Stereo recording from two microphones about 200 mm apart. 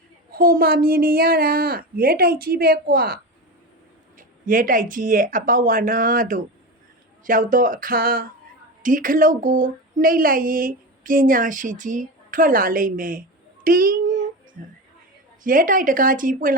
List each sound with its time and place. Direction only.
0.3 s speech: 45° right (ahead or behind)
4.2 s speech: 45° right (ahead or behind)